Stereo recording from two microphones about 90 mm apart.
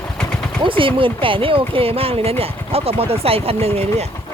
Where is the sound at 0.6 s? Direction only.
70° right (ahead or behind); by 3.6 s 90° right.